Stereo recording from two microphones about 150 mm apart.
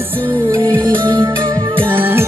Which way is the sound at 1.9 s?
15° right (ahead or behind).